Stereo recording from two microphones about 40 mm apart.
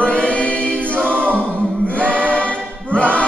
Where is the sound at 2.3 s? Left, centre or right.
Left.